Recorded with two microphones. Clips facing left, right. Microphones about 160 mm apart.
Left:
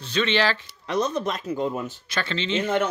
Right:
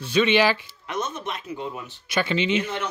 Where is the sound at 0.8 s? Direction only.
35° left (ahead or behind).